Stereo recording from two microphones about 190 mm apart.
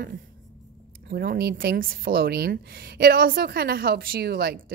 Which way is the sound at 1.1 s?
55° right (ahead or behind).